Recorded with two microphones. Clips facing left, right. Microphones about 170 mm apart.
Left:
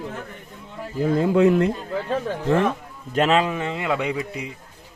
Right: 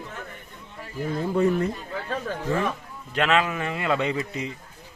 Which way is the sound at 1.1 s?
90° left.